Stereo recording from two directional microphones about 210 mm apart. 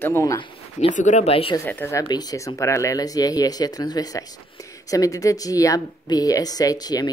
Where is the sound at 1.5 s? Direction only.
10° left (ahead or behind).